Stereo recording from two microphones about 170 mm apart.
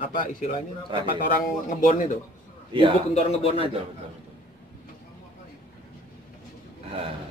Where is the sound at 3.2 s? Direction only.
35° left (ahead or behind).